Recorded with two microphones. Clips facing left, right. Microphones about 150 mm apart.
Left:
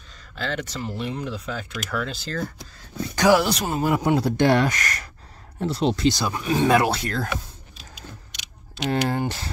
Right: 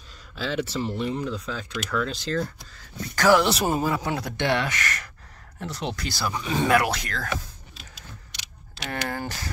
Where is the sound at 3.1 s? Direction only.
20° left (ahead or behind).